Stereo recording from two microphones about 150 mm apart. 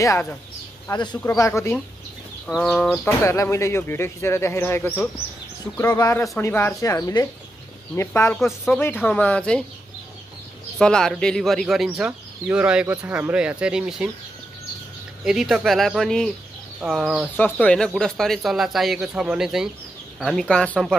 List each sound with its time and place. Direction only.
0.0 s speech: 15° left (ahead or behind)
2.4 s speech: 5° left (ahead or behind)
3.2 s speech: 20° left (ahead or behind)
6.4 s speech: 15° left (ahead or behind)
10.8 s speech: 5° left (ahead or behind)
15.2 s speech: 5° right (ahead or behind)
17.4 s speech: 10° left (ahead or behind)